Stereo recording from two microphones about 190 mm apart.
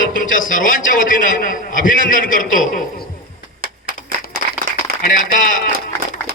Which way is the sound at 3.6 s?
50° right (ahead or behind).